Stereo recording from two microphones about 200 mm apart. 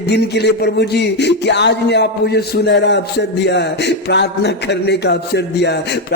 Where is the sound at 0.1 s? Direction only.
55° left (ahead or behind).